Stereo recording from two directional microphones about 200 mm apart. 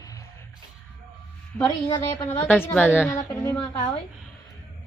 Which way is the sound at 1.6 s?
10° left (ahead or behind).